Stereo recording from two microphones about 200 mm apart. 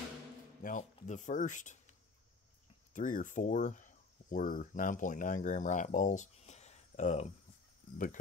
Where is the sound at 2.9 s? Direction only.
40° left (ahead or behind).